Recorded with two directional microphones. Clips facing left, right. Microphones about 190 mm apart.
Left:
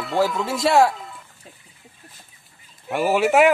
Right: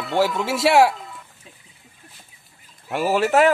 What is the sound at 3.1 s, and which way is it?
Speech, 10° left (ahead or behind).